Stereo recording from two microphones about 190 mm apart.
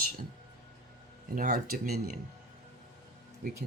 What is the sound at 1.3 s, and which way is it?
Speech, 45° right (ahead or behind).